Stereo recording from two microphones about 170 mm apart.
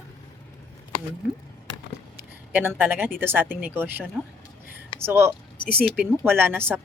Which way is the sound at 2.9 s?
15° right (ahead or behind).